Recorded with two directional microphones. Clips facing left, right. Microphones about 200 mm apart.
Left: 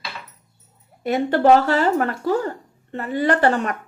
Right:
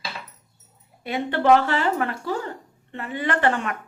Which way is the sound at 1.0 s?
40° left (ahead or behind).